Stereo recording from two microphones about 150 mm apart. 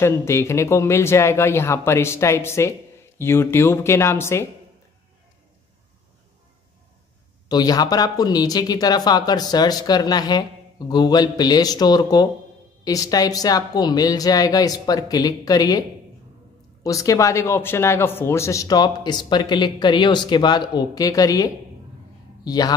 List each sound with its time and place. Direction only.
0.0 s speech: 15° left (ahead or behind)
7.4 s speech: 25° left (ahead or behind)
16.8 s a man's voice: 20° left (ahead or behind)